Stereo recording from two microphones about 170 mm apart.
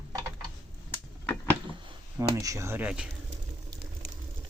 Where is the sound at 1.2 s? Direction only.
10° left (ahead or behind).